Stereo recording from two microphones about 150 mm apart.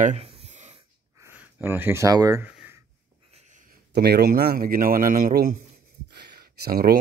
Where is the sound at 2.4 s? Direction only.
10° right (ahead or behind).